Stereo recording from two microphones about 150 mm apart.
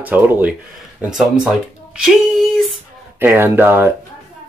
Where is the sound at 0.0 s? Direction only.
10° right (ahead or behind).